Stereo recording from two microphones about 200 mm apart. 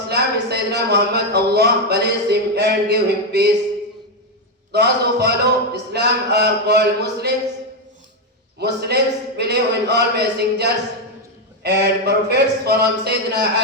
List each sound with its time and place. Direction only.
0.1 s speech: 55° right (ahead or behind)
4.7 s speech: 55° right (ahead or behind)
8.5 s a man's voice: 55° right (ahead or behind)